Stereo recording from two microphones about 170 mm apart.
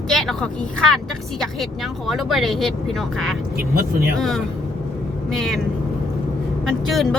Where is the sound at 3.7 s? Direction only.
65° right (ahead or behind).